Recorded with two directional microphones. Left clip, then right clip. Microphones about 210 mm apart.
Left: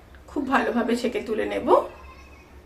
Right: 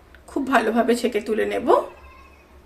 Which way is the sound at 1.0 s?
50° right (ahead or behind).